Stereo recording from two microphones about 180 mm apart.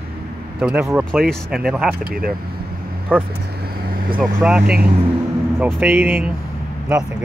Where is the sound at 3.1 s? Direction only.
5° left (ahead or behind).